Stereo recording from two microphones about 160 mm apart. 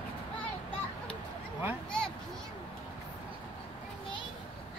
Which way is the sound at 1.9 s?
5° left (ahead or behind).